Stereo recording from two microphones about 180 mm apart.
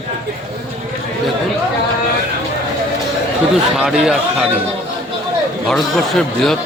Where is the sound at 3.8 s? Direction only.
5° right (ahead or behind).